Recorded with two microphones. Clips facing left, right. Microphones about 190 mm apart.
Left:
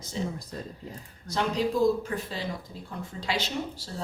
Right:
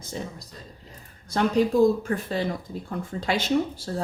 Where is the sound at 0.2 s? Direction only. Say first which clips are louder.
Left 3 dB; 55° right (ahead or behind).